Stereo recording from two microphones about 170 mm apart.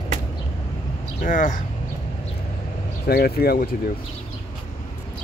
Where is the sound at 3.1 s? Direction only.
65° left (ahead or behind).